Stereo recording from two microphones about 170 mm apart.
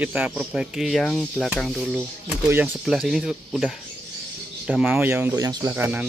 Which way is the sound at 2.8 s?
Centre (ahead or behind).